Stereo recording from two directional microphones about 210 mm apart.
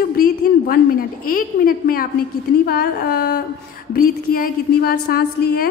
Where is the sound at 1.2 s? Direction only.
45° left (ahead or behind).